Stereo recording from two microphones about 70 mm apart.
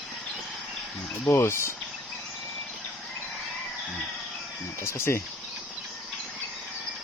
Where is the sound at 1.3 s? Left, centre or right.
Left.